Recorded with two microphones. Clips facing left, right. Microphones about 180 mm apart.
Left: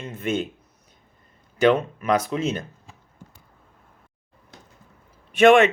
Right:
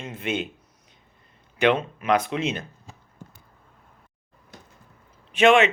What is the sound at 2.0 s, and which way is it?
Speech, 40° left (ahead or behind).